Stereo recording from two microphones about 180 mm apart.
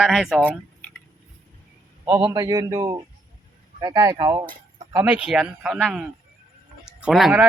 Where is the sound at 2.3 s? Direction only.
20° right (ahead or behind).